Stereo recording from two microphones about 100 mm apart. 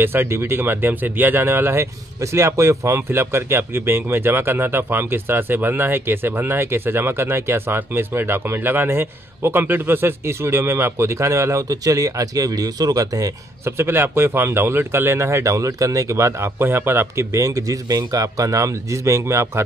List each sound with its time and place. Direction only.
0.0 s speech: 20° right (ahead or behind)
13.7 s speech: 25° right (ahead or behind)